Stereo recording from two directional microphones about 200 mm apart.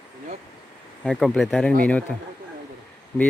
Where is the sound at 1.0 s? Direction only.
Centre (ahead or behind).